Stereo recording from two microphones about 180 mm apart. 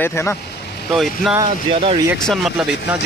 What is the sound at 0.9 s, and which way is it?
Speech, centre (ahead or behind).